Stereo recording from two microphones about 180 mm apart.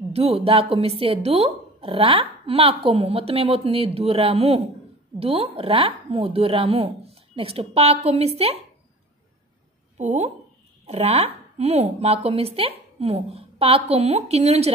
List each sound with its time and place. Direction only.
0.1 s speech: 35° right (ahead or behind)
9.9 s speech: 40° right (ahead or behind)